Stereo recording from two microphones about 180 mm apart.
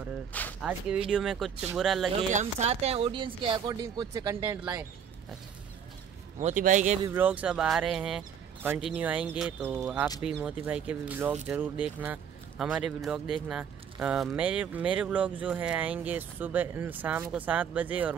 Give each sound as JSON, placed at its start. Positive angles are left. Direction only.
{"t": 0.3, "sound": "speech", "side_deg": 10}
{"t": 0.7, "sound": "speech", "side_deg": -5}
{"t": 2.3, "sound": "speech", "side_deg": -35}
{"t": 6.4, "sound": "a man's voice", "side_deg": -45}
{"t": 7.1, "sound": "speech", "side_deg": -10}